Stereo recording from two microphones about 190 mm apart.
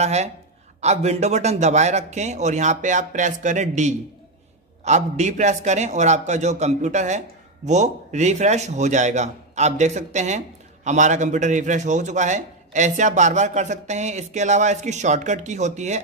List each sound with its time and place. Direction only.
0.0 s a man's voice: 35° right (ahead or behind)